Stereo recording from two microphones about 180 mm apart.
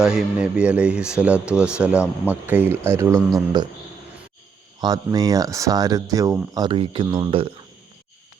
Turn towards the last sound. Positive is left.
turn(degrees=-30)  # may be behind; listen again after turning